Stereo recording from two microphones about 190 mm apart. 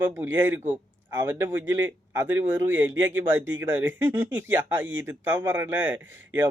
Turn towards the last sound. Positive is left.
turn(degrees=-80)